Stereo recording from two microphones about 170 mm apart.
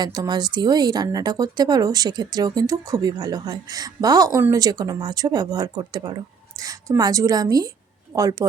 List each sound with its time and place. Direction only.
0.0 s speech: 25° right (ahead or behind)